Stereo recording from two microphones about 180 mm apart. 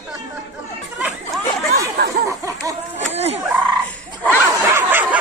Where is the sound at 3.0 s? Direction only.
35° right (ahead or behind).